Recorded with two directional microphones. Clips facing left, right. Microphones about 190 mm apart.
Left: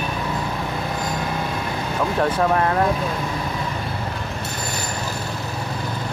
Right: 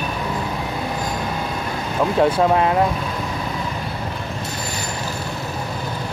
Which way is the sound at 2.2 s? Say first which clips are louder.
Right 3 dB; 15° right (ahead or behind).